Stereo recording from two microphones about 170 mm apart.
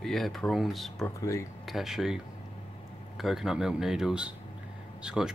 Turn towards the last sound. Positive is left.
turn(degrees=-5)  # may be behind; listen again after turning